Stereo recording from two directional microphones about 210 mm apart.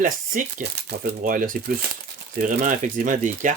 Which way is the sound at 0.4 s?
40° right (ahead or behind).